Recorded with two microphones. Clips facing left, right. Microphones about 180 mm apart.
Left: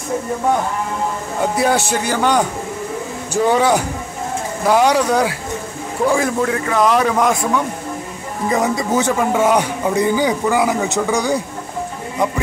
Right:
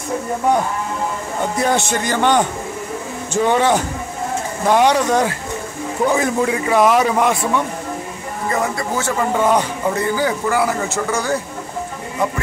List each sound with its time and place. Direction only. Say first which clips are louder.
1.4 s a man's voice: left 2 dB; 5° left (ahead or behind)
3.4 s a man's voice: left 1 dB; 10° left (ahead or behind)
6.0 s a man's voice: left 1 dB; 5° right (ahead or behind)
8.5 s a man's voice: left 3 dB; 20° left (ahead or behind)